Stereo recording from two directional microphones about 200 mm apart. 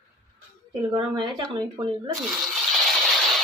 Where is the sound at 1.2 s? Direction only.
25° right (ahead or behind).